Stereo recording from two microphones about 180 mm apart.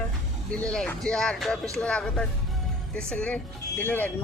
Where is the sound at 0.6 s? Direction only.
5° left (ahead or behind).